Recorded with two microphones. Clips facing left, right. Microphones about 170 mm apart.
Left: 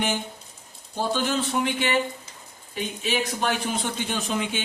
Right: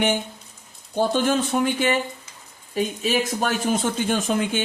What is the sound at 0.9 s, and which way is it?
Speech, 50° right (ahead or behind).